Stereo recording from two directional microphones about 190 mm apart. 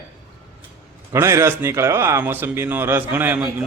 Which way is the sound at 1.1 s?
15° right (ahead or behind).